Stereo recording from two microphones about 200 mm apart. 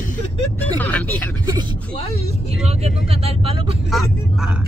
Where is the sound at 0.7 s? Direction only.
10° left (ahead or behind).